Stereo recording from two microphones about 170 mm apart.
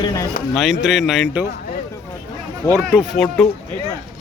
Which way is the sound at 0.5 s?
Centre (ahead or behind).